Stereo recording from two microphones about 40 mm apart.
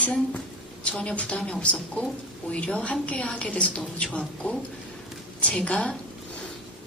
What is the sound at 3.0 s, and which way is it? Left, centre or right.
A woman's voice, left.